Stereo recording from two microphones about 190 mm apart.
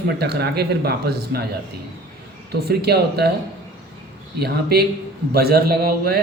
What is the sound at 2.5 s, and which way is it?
Speech, 60° right (ahead or behind).